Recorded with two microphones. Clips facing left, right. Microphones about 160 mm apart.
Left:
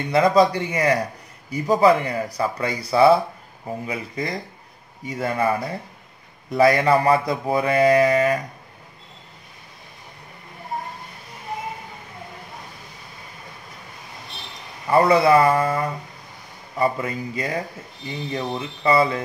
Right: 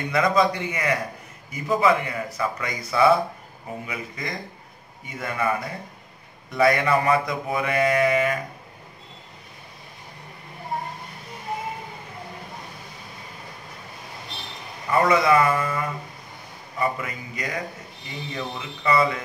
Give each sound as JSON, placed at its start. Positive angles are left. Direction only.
{"t": 0.1, "sound": "mantra", "side_deg": 30}
{"t": 14.9, "sound": "mantra", "side_deg": 35}